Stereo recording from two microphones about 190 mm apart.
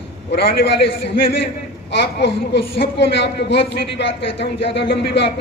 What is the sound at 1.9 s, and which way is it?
Speech, 65° left (ahead or behind).